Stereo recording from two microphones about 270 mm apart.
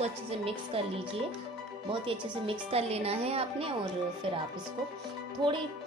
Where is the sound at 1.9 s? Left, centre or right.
Centre.